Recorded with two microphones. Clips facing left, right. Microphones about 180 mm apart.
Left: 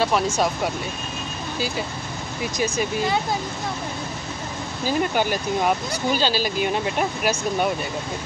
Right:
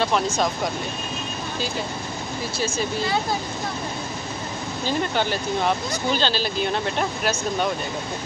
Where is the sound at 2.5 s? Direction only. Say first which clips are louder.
Left 2 dB; 15° left (ahead or behind).